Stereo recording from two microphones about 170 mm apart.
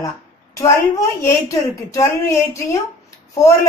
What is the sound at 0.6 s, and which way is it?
A woman's voice, 20° left (ahead or behind).